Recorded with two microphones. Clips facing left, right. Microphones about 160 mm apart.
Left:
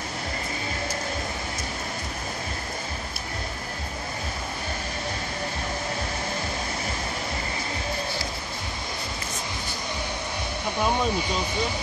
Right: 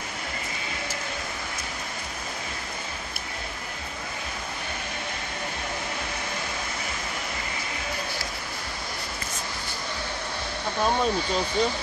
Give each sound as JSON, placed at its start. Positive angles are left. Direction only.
{"t": 10.8, "sound": "speech", "side_deg": 15}